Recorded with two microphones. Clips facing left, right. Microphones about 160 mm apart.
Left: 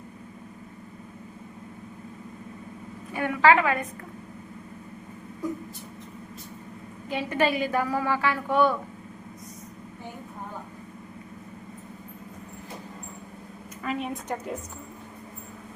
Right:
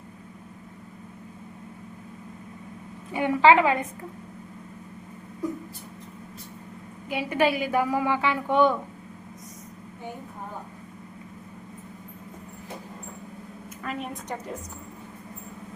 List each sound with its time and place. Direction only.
3.1 s a woman's voice: 20° right (ahead or behind)
7.1 s a woman's voice: 10° right (ahead or behind)
13.8 s a woman's voice: centre (ahead or behind)